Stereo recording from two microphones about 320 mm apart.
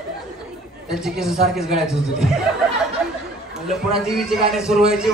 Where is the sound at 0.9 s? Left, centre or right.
Centre.